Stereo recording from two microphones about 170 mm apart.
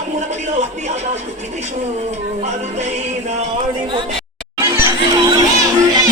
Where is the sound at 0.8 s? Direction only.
45° right (ahead or behind).